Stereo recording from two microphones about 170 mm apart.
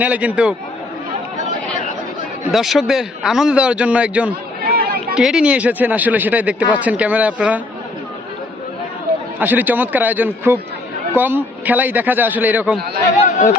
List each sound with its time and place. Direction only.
0.0 s a man's voice: 10° right (ahead or behind)
2.5 s speech: centre (ahead or behind)
4.6 s chatter: 60° right (ahead or behind)
5.1 s a man's voice: 5° right (ahead or behind)
9.4 s a man's voice: 10° right (ahead or behind)
13.2 s chatter: 45° left (ahead or behind)